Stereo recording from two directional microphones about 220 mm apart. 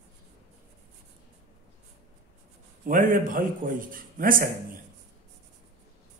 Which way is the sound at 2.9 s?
40° right (ahead or behind).